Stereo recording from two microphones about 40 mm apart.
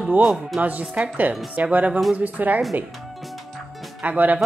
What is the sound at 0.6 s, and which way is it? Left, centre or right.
A woman's voice, right.